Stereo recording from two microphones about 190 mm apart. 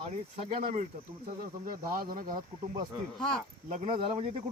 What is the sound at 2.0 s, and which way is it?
Speech, 50° right (ahead or behind).